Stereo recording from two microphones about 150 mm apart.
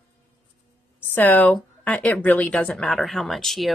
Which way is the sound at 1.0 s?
15° left (ahead or behind).